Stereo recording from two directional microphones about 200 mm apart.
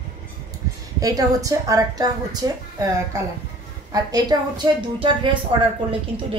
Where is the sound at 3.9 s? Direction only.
20° right (ahead or behind).